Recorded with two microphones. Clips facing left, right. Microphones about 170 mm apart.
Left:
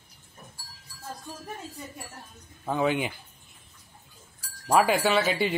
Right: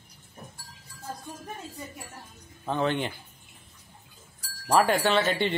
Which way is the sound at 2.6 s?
10° left (ahead or behind).